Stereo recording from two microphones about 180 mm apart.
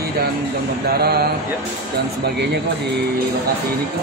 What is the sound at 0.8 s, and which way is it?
Speech, 60° right (ahead or behind).